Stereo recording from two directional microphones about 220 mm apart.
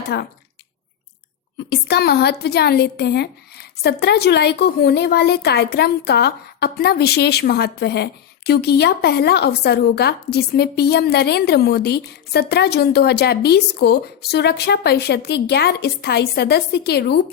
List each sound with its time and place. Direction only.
0.1 s a woman's voice: 50° left (ahead or behind)
1.5 s a woman's voice: 50° left (ahead or behind)